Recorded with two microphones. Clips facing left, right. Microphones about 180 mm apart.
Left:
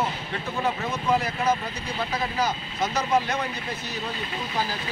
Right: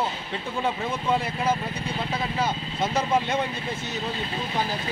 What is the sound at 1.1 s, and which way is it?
Speech, 30° right (ahead or behind).